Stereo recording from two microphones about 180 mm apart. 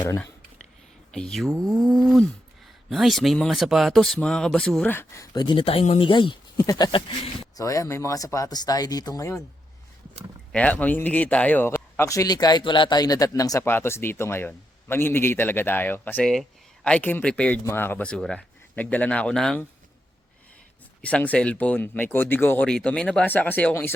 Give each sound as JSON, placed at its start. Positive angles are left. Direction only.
{"t": 0.0, "sound": "speech", "side_deg": 20}
{"t": 1.1, "sound": "cattle", "side_deg": 5}
{"t": 2.9, "sound": "a man's voice", "side_deg": 0}
{"t": 10.5, "sound": "a man's voice", "side_deg": 10}
{"t": 21.0, "sound": "a man's voice", "side_deg": 5}